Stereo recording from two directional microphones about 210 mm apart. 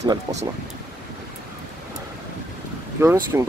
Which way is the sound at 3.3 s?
10° right (ahead or behind).